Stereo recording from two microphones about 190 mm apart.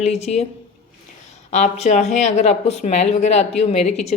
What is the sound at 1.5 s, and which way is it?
A woman's voice, 40° left (ahead or behind).